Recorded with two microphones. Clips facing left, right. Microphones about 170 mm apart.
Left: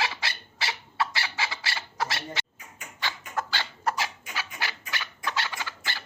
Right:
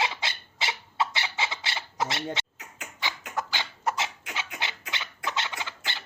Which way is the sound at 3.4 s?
15° right (ahead or behind).